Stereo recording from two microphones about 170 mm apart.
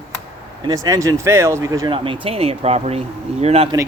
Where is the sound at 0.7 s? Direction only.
20° right (ahead or behind).